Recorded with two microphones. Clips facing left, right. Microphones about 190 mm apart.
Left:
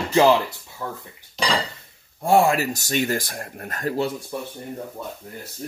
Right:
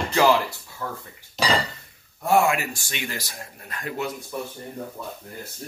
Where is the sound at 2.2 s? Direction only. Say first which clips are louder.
Left 3 dB; 30° left (ahead or behind).